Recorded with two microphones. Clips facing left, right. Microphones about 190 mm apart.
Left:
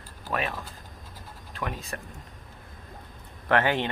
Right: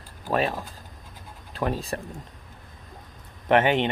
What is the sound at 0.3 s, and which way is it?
Speech, 30° right (ahead or behind).